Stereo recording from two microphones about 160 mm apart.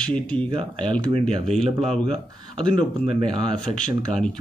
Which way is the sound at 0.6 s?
30° right (ahead or behind).